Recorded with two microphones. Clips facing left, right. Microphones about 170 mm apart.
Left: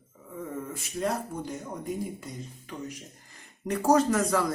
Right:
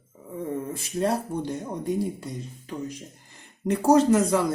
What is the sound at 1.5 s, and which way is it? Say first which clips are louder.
Speech: right 6 dB; 35° right (ahead or behind).